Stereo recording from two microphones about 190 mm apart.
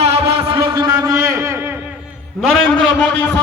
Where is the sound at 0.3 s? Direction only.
30° right (ahead or behind).